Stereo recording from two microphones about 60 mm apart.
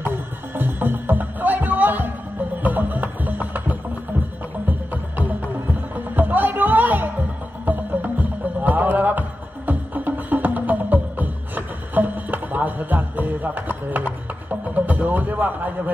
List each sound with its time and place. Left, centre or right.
0.0 s music: right
5.9 s music: right